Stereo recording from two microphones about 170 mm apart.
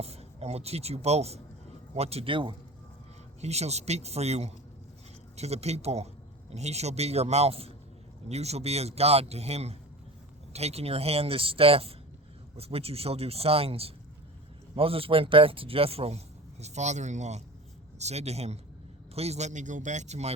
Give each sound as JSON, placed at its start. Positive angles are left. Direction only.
{"t": 0.0, "sound": "speech", "side_deg": -35}